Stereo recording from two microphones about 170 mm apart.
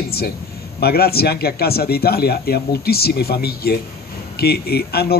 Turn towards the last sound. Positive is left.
turn(degrees=70)  # may be behind; listen again after turning